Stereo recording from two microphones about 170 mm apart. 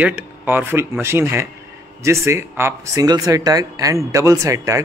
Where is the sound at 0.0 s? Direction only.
10° right (ahead or behind).